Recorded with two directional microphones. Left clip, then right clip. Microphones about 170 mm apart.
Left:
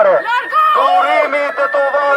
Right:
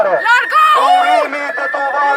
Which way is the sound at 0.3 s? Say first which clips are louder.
Right 3 dB; 25° right (ahead or behind).